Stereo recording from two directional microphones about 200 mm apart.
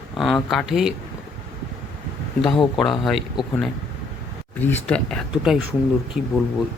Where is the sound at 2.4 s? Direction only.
25° left (ahead or behind).